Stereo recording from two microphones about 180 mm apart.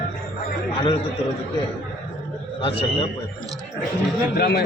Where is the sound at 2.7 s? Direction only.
30° left (ahead or behind).